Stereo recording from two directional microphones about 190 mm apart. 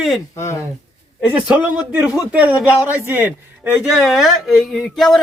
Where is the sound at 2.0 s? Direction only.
15° left (ahead or behind).